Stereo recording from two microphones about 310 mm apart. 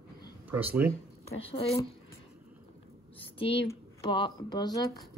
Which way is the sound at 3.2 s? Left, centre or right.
Centre.